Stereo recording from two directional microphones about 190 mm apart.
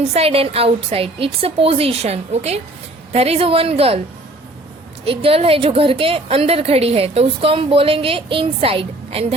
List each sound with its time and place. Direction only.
0.0 s a woman's voice: 35° right (ahead or behind)
5.0 s a woman's voice: 30° right (ahead or behind)